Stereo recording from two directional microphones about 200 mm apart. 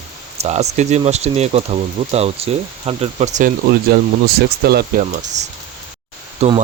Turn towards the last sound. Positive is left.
turn(degrees=-30)  # may be behind; listen again after turning